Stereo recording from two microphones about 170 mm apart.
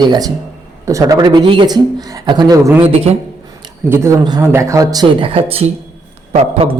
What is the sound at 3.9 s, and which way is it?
A man's voice, 15° right (ahead or behind).